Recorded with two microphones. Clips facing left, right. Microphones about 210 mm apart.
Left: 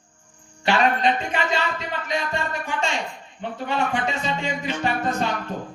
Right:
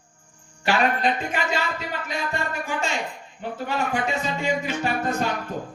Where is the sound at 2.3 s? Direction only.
10° right (ahead or behind).